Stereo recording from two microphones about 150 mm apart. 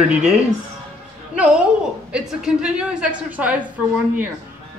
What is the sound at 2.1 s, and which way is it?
A woman's voice, 5° right (ahead or behind).